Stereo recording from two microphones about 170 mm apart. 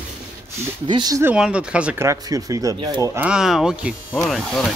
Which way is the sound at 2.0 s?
20° right (ahead or behind).